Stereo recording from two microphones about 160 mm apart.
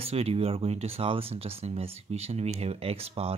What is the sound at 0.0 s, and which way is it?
Speech, 40° right (ahead or behind).